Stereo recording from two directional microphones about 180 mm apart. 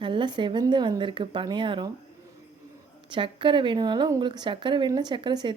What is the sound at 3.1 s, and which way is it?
Speech, 25° right (ahead or behind).